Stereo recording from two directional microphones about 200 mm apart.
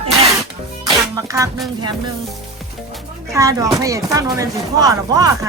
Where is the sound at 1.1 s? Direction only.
15° right (ahead or behind).